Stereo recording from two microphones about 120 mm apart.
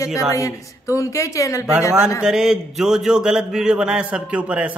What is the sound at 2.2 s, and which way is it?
A man's voice, 5° right (ahead or behind).